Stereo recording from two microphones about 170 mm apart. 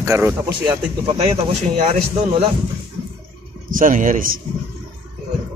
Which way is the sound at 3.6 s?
50° right (ahead or behind).